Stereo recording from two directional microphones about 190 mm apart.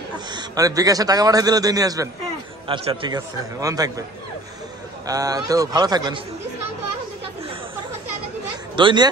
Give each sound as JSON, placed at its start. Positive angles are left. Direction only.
{"t": 0.3, "sound": "a man's voice", "side_deg": -20}
{"t": 5.0, "sound": "a man's voice", "side_deg": -20}
{"t": 8.7, "sound": "a man's voice", "side_deg": -25}